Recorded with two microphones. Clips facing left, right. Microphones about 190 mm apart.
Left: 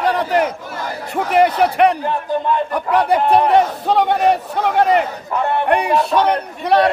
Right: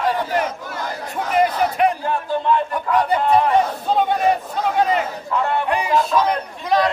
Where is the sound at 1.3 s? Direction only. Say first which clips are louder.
Left 4 dB; 70° left (ahead or behind).